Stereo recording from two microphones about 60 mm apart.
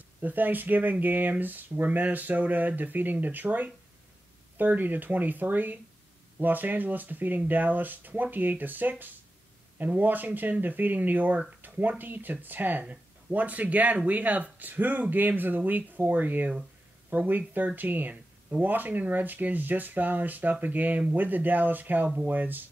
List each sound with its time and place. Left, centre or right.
0.2 s speech: right